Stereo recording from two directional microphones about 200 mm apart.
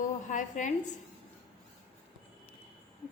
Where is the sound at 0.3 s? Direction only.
40° left (ahead or behind).